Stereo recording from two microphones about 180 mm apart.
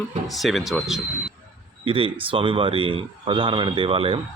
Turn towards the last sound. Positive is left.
turn(degrees=-30)  # may be behind; listen again after turning